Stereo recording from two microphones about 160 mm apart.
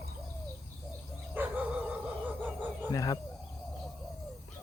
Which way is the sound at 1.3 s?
10° right (ahead or behind).